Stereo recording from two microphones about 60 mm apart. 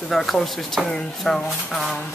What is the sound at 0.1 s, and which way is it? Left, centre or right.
Speech, centre.